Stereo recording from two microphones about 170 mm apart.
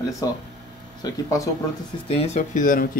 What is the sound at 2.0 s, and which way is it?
Speech, 40° left (ahead or behind).